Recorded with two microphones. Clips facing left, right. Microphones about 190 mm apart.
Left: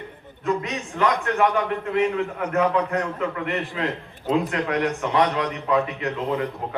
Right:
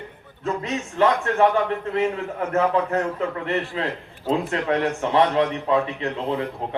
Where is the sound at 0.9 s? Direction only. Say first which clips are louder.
Right 2 dB; 35° right (ahead or behind).